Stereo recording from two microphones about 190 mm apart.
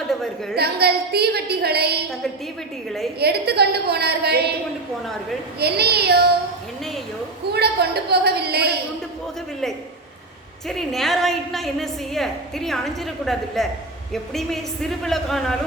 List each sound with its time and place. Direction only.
0.1 s a sound: centre (ahead or behind)
0.5 s a woman's voice: 55° right (ahead or behind)
3.2 s a woman's voice: 55° right (ahead or behind)
5.5 s a woman's voice: 55° right (ahead or behind)
7.5 s a woman's voice: 60° right (ahead or behind)
10.7 s a woman's voice: centre (ahead or behind)